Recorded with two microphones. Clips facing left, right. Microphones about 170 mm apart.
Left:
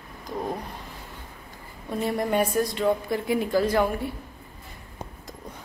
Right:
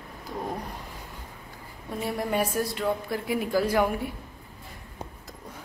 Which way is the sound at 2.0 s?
5° right (ahead or behind).